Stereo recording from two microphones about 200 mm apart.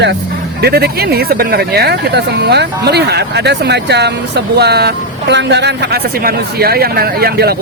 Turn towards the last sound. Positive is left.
turn(degrees=-50)  # may be behind; listen again after turning